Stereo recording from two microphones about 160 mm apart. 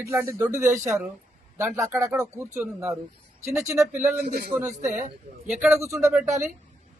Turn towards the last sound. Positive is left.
turn(degrees=-15)  # may be behind; listen again after turning